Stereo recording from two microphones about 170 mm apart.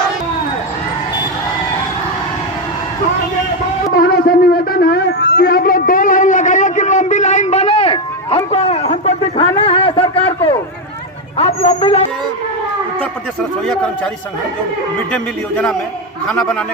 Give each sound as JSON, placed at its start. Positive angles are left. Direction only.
{"t": 3.9, "sound": "music", "side_deg": 60}
{"t": 8.4, "sound": "a sound", "side_deg": 40}
{"t": 11.3, "sound": "speech", "side_deg": 35}
{"t": 13.0, "sound": "speech", "side_deg": 5}
{"t": 15.1, "sound": "a man's voice", "side_deg": 5}